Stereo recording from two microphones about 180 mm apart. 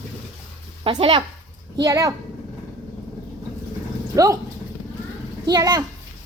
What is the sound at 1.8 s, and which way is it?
Speech, 15° right (ahead or behind).